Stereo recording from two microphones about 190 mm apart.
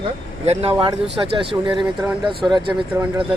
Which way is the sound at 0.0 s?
35° right (ahead or behind).